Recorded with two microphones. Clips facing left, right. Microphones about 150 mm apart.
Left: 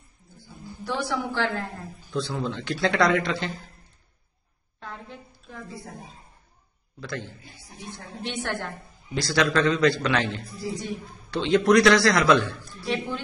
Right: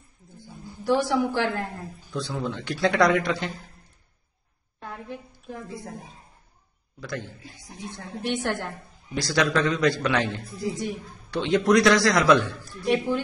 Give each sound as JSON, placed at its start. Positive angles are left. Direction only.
{"t": 0.8, "sound": "a man's voice", "side_deg": -15}
{"t": 4.7, "sound": "a sound", "side_deg": -15}
{"t": 7.0, "sound": "a man's voice", "side_deg": -15}